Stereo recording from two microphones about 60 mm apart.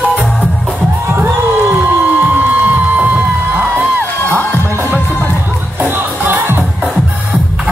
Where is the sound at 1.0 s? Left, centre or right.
Right.